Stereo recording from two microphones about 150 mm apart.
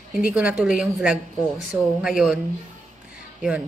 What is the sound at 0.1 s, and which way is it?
A woman's voice, 10° right (ahead or behind).